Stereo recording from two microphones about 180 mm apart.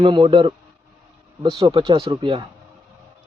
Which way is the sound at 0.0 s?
25° right (ahead or behind).